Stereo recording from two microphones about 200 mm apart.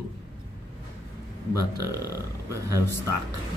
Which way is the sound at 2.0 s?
15° right (ahead or behind).